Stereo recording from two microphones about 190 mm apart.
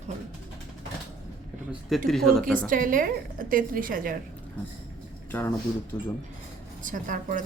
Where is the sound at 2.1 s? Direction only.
Centre (ahead or behind).